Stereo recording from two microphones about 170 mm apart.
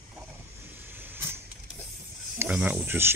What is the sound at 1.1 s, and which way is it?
Vehicle, 15° right (ahead or behind).